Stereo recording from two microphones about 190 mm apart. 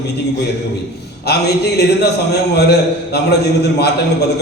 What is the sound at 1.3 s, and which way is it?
Speech, 60° left (ahead or behind).